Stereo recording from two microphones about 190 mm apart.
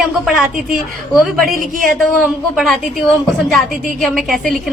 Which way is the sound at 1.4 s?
45° right (ahead or behind).